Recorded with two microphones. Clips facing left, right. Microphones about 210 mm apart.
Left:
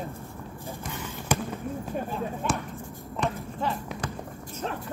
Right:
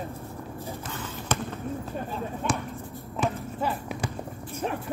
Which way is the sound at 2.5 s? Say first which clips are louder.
Right 1 dB; centre (ahead or behind).